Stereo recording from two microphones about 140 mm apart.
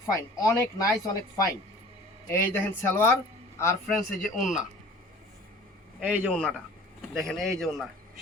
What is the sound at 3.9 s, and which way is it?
Speech, centre (ahead or behind).